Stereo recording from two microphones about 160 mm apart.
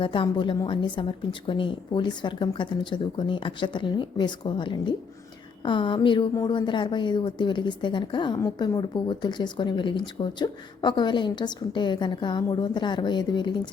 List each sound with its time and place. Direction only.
0.0 s a woman's voice: 30° left (ahead or behind)